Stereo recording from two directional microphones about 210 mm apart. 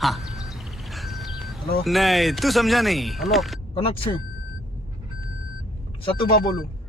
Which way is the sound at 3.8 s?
25° left (ahead or behind).